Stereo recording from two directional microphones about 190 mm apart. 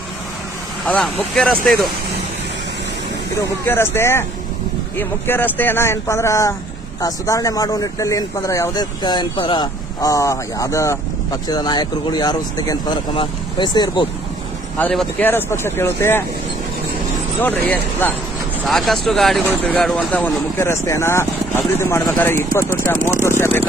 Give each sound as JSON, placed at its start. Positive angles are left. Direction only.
{"t": 0.9, "sound": "speech", "side_deg": 5}
{"t": 3.7, "sound": "speech", "side_deg": 15}
{"t": 14.8, "sound": "speech", "side_deg": 10}
{"t": 17.4, "sound": "speech", "side_deg": 10}